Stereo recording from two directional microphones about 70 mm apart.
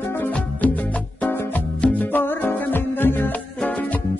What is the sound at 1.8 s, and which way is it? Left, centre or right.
Music, left.